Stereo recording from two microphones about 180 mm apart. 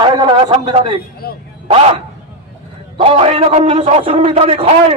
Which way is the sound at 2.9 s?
30° right (ahead or behind).